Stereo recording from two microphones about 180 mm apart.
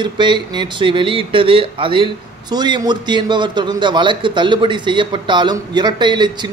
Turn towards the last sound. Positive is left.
turn(degrees=-25)  # may be behind; listen again after turning